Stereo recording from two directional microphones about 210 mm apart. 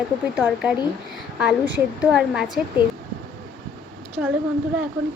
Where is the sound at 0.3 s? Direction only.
5° right (ahead or behind).